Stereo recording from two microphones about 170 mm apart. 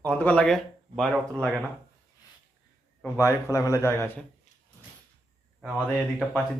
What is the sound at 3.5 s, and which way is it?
Speech, 20° left (ahead or behind).